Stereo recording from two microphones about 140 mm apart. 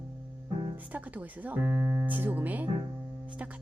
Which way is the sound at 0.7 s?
10° right (ahead or behind).